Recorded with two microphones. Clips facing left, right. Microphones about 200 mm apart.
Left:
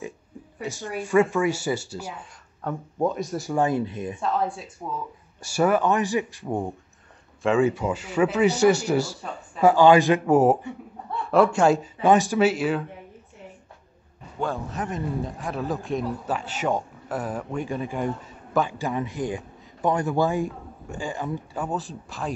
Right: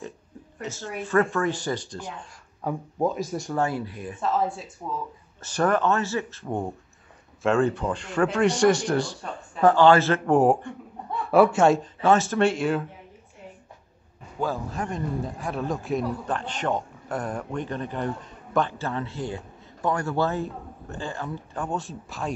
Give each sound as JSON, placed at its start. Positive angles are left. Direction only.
{"t": 0.6, "sound": "speech", "side_deg": 15}
{"t": 2.6, "sound": "a man's voice", "side_deg": -5}
{"t": 3.5, "sound": "speech", "side_deg": 20}
{"t": 4.2, "sound": "a man's voice", "side_deg": 0}
{"t": 5.4, "sound": "speech", "side_deg": 10}
{"t": 6.4, "sound": "a man's voice", "side_deg": 5}
{"t": 12.0, "sound": "speech", "side_deg": 15}
{"t": 12.4, "sound": "a man's voice", "side_deg": 5}
{"t": 14.4, "sound": "speech", "side_deg": 0}
{"t": 21.6, "sound": "a man's voice", "side_deg": 0}